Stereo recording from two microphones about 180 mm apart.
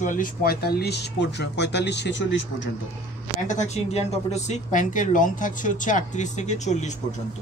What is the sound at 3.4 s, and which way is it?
Speech, 40° left (ahead or behind).